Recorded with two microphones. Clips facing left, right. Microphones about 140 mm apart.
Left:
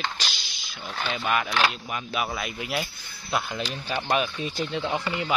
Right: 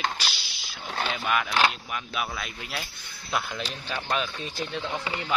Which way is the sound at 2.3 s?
5° left (ahead or behind).